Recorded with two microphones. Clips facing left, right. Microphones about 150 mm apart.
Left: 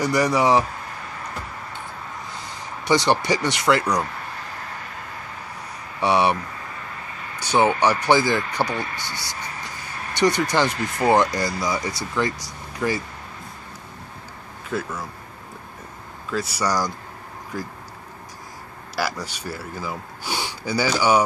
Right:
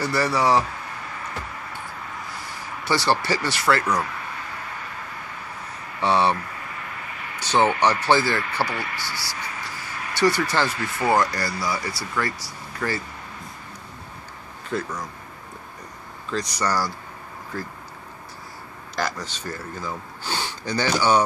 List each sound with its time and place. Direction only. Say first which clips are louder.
0.0 s speech: left 3 dB; 15° left (ahead or behind)
2.8 s speech: left 3 dB; 20° left (ahead or behind)
5.9 s speech: left 1 dB; 15° left (ahead or behind)
7.3 s speech: left 1 dB; 10° left (ahead or behind)
14.7 s speech: even; 5° left (ahead or behind)
16.3 s speech: left 1 dB; 5° left (ahead or behind)
18.9 s speech: left 1 dB; 10° left (ahead or behind)